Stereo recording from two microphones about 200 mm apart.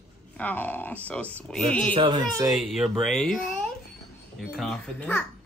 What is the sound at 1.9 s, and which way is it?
Speech, 20° right (ahead or behind).